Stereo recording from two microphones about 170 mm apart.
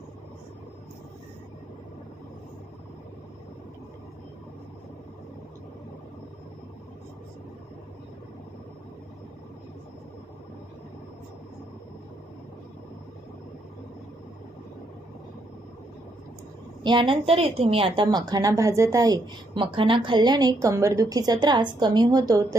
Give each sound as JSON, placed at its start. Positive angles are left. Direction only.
{"t": 16.8, "sound": "a woman's voice", "side_deg": -30}